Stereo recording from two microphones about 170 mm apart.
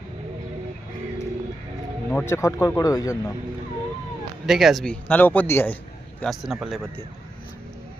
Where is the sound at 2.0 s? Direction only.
10° left (ahead or behind).